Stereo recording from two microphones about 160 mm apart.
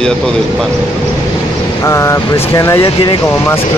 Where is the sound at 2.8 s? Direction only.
30° left (ahead or behind).